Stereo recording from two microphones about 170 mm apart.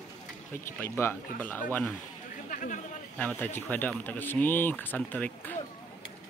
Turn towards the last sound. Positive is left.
turn(degrees=10)  # may be behind; listen again after turning